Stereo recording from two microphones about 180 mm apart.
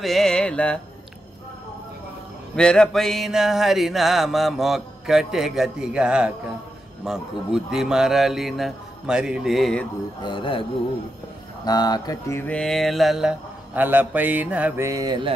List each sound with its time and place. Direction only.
0.0 s music: centre (ahead or behind)
2.5 s mantra: 5° left (ahead or behind)
10.2 s mantra: 30° left (ahead or behind)
11.6 s mantra: 20° left (ahead or behind); by 15.3 s 25° right (ahead or behind)